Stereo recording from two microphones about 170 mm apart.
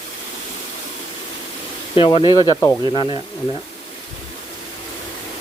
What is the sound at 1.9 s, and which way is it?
Speech, 30° left (ahead or behind).